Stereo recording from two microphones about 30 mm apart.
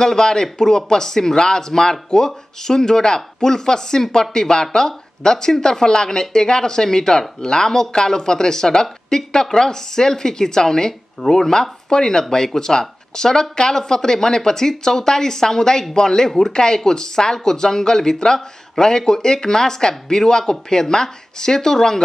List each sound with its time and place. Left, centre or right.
0.0 s speech: left
16.5 s speech: left